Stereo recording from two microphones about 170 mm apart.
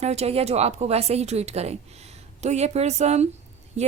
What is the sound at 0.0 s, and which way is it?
A woman's voice, 40° right (ahead or behind).